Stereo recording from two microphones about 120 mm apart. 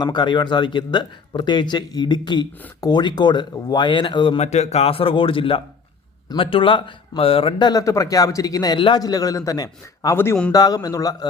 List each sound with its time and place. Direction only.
0.0 s a man's voice: 40° left (ahead or behind)
4.4 s speech: 65° left (ahead or behind)
7.7 s a man's voice: 30° left (ahead or behind)